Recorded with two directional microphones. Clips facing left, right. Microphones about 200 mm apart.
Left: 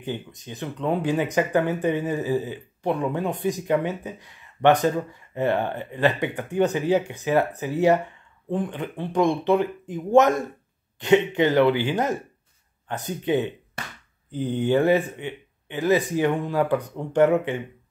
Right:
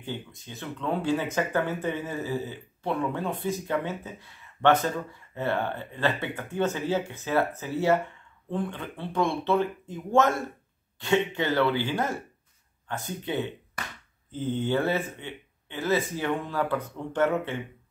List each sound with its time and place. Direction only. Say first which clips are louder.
0.0 s speech: left 5 dB; 20° left (ahead or behind)